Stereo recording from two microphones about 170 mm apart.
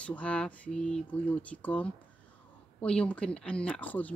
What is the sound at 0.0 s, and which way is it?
Speech, 5° left (ahead or behind).